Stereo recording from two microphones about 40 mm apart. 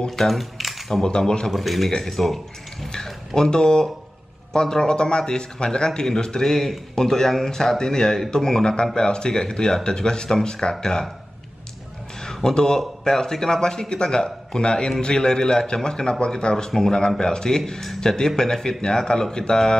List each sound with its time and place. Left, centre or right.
0.1 s speech: centre
1.0 s speech: left
1.5 s a man's voice: centre
3.3 s speech: centre
12.4 s speech: centre